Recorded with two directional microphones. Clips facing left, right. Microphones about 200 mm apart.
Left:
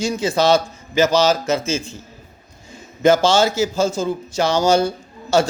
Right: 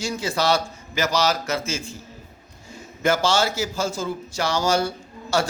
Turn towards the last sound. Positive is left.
turn(degrees=20)  # may be behind; listen again after turning